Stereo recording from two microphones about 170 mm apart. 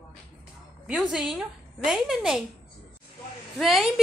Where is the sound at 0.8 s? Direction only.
5° right (ahead or behind).